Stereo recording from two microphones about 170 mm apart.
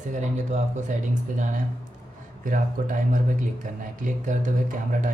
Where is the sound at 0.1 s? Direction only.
45° right (ahead or behind).